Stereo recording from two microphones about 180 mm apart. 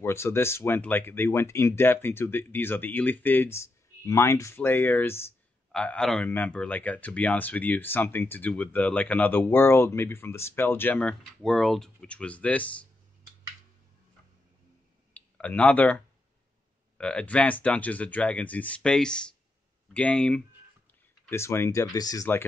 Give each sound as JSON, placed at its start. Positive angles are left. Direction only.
{"t": 0.0, "sound": "speech", "side_deg": 15}
{"t": 15.1, "sound": "speech", "side_deg": 10}
{"t": 17.0, "sound": "speech", "side_deg": 5}